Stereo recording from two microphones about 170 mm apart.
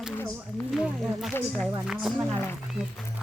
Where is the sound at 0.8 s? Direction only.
Centre (ahead or behind).